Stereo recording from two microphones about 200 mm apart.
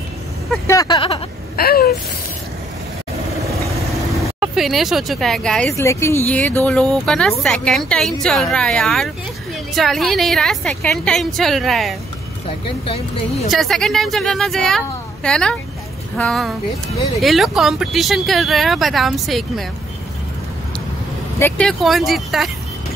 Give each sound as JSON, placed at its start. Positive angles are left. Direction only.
{"t": 0.7, "sound": "a sound", "side_deg": 20}
{"t": 1.6, "sound": "a sound", "side_deg": 50}
{"t": 4.4, "sound": "speech", "side_deg": 0}
{"t": 5.8, "sound": "speech", "side_deg": 15}
{"t": 12.4, "sound": "speech", "side_deg": 30}
{"t": 13.5, "sound": "speech", "side_deg": 0}
{"t": 21.4, "sound": "speech", "side_deg": 10}